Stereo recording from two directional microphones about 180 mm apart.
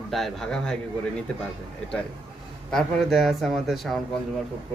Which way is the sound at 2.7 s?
Centre (ahead or behind).